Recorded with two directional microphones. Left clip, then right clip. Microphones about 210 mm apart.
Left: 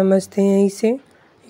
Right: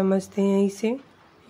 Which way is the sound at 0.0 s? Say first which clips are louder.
Left 7 dB; 30° left (ahead or behind).